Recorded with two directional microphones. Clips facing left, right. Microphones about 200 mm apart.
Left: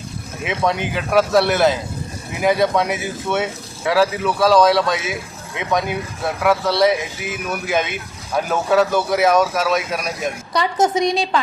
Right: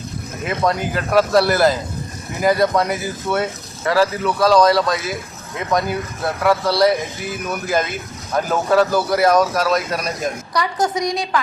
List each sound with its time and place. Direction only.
0.4 s speech: centre (ahead or behind)
10.5 s a woman's voice: 25° left (ahead or behind)